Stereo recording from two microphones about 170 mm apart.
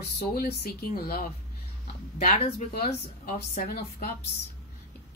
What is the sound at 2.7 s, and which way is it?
Speech, 55° left (ahead or behind).